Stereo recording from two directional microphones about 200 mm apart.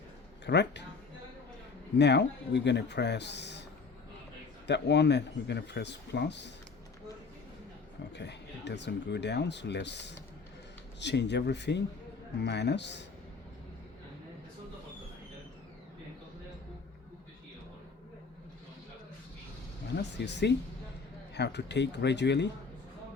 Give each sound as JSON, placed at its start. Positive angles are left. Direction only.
{"t": 0.4, "sound": "speech", "side_deg": 60}
{"t": 2.0, "sound": "speech", "side_deg": 60}
{"t": 4.6, "sound": "speech", "side_deg": 60}
{"t": 8.1, "sound": "speech", "side_deg": 60}
{"t": 20.0, "sound": "speech", "side_deg": 60}